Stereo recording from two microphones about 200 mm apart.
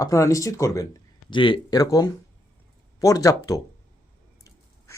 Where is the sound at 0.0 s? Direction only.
15° left (ahead or behind).